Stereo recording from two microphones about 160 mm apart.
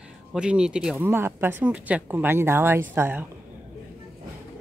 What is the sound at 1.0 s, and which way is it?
Speech, 15° right (ahead or behind).